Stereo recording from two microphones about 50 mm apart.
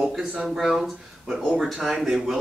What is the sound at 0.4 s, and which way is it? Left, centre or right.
Speech, centre.